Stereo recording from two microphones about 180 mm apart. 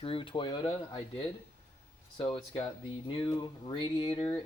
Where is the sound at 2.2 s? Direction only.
30° left (ahead or behind).